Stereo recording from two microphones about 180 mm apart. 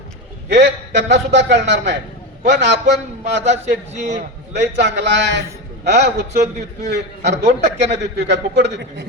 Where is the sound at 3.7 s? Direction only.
40° right (ahead or behind).